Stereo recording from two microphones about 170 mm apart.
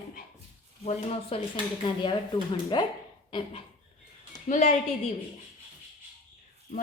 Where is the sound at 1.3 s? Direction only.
35° left (ahead or behind).